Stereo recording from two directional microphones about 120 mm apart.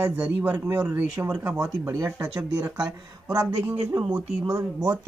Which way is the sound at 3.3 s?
25° right (ahead or behind).